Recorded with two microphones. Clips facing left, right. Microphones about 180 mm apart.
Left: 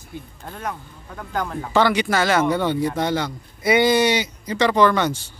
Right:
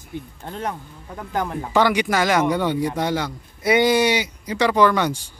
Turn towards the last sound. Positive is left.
turn(degrees=-10)  # may be behind; listen again after turning